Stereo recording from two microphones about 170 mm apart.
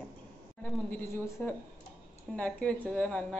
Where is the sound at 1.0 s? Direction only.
15° left (ahead or behind).